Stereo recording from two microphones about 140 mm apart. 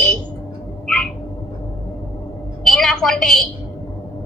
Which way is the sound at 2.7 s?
5° left (ahead or behind).